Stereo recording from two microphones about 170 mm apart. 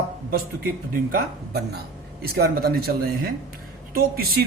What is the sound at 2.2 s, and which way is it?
Speech, 65° right (ahead or behind).